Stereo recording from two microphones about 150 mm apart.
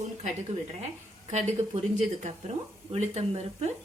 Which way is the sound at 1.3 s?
45° right (ahead or behind).